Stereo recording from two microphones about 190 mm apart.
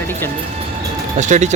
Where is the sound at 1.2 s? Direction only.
40° right (ahead or behind).